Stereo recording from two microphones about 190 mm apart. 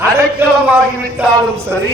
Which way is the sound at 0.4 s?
10° right (ahead or behind).